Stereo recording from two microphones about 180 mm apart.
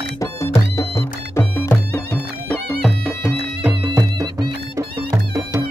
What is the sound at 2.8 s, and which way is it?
Music, centre (ahead or behind).